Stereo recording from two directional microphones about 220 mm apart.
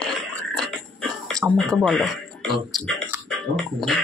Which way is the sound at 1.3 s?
Centre (ahead or behind).